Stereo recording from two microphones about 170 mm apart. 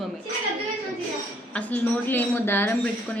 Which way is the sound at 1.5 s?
10° left (ahead or behind).